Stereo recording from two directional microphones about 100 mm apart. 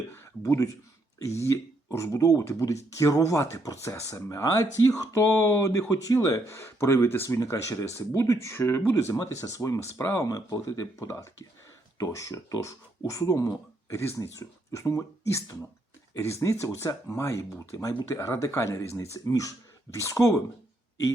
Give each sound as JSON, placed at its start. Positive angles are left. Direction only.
{"t": 0.1, "sound": "speech", "side_deg": 30}